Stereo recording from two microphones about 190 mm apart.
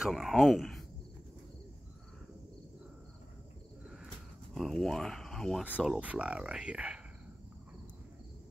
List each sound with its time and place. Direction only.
0.0 s speech: centre (ahead or behind)
4.6 s speech: centre (ahead or behind)